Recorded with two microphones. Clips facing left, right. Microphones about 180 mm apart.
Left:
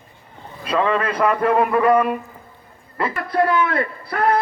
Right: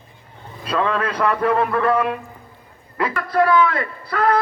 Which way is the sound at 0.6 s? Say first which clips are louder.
Left 2 dB; 5° left (ahead or behind).